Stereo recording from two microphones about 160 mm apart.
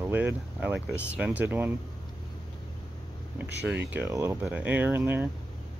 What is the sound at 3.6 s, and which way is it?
Speech, 10° right (ahead or behind).